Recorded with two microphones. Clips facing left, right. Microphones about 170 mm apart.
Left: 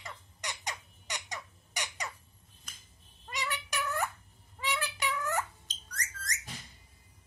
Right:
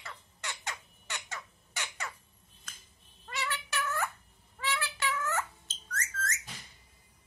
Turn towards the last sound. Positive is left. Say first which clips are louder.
# right 5 dB
turn(degrees=15)  # may be behind; listen again after turning